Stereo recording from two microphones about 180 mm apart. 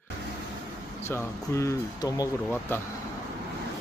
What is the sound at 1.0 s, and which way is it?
Speech, 15° left (ahead or behind).